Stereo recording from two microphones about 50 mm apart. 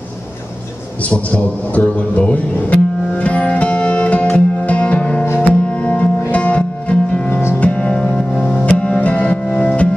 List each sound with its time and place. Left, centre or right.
1.0 s music: left
8.6 s music: left